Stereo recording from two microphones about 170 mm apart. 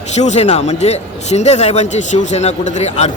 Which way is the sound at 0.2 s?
45° left (ahead or behind).